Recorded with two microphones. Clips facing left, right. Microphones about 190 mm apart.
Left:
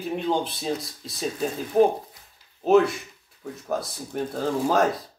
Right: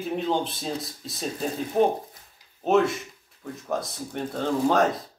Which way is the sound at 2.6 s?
Centre (ahead or behind).